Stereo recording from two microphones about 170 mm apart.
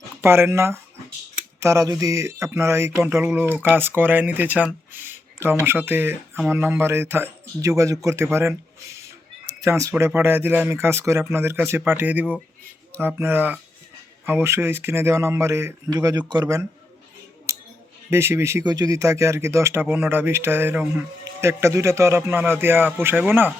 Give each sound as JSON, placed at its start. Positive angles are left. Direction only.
{"t": 0.2, "sound": "speech", "side_deg": -15}
{"t": 9.6, "sound": "speech", "side_deg": -20}
{"t": 18.1, "sound": "speech", "side_deg": -15}